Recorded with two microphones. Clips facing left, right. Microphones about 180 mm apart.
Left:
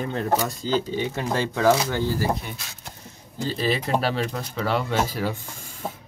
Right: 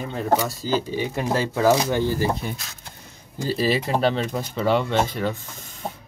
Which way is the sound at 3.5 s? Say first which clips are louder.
Right 2 dB; 5° right (ahead or behind).